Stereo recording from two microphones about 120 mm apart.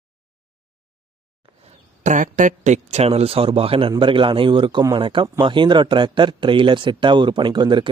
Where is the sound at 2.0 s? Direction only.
90° right.